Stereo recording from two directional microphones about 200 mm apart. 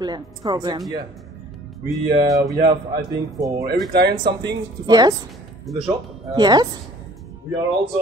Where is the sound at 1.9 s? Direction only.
Centre (ahead or behind).